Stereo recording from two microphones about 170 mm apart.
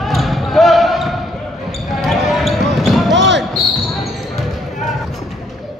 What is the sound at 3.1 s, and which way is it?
Basketball bounce, 90° right.